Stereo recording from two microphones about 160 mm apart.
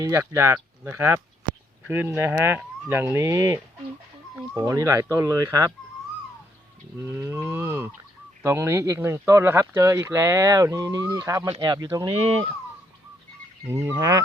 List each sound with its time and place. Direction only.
0.0 s speech: 20° right (ahead or behind)
7.0 s speech: 15° right (ahead or behind)
13.7 s speech: 15° right (ahead or behind)